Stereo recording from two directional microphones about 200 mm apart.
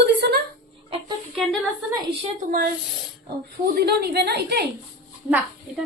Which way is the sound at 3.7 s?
55° right (ahead or behind).